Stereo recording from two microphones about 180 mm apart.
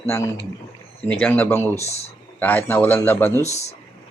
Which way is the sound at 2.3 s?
10° left (ahead or behind).